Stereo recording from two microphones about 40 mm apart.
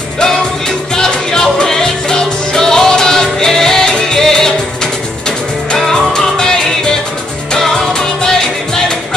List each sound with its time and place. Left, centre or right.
0.9 s music: centre
5.9 s music: centre